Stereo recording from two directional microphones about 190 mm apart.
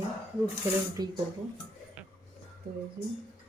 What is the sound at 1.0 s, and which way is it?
Speech, 20° right (ahead or behind).